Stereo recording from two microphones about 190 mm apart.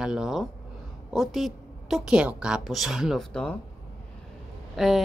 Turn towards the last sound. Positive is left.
turn(degrees=0)  # may be behind; listen again after turning